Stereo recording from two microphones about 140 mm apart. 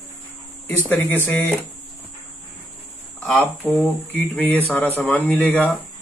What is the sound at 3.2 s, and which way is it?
Speech, 10° left (ahead or behind).